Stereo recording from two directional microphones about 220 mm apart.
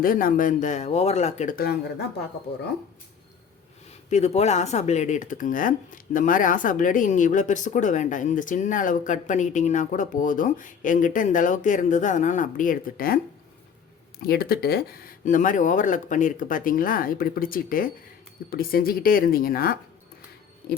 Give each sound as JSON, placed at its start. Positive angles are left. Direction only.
{"t": 0.0, "sound": "speech", "side_deg": 40}
{"t": 4.1, "sound": "speech", "side_deg": 30}
{"t": 14.2, "sound": "speech", "side_deg": 45}